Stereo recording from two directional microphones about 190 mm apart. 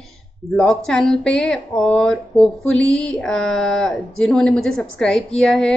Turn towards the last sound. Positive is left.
turn(degrees=5)  # may be behind; listen again after turning